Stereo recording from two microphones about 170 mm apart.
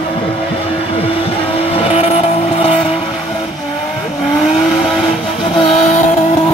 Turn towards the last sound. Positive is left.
turn(degrees=40)  # may be behind; listen again after turning